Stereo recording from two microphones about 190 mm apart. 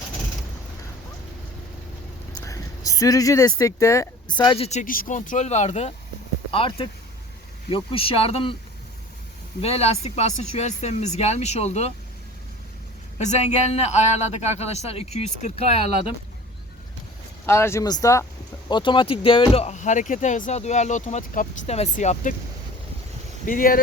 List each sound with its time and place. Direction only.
2.3 s speech: 15° left (ahead or behind)
9.6 s speech: 35° left (ahead or behind)
13.1 s speech: 35° left (ahead or behind)
17.4 s speech: 15° left (ahead or behind); by 22.4 s 40° left (ahead or behind)
23.5 s speech: 50° left (ahead or behind)